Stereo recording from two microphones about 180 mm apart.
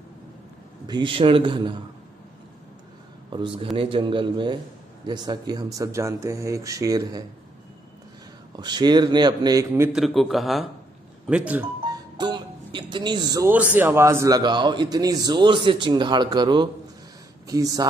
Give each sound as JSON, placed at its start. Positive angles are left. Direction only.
{"t": 0.8, "sound": "a man's voice", "side_deg": -25}
{"t": 3.3, "sound": "a man's voice", "side_deg": -30}
{"t": 8.5, "sound": "a man's voice", "side_deg": -25}
{"t": 9.9, "sound": "speech", "side_deg": 0}
{"t": 11.8, "sound": "music", "side_deg": -25}
{"t": 13.7, "sound": "a man's voice", "side_deg": -15}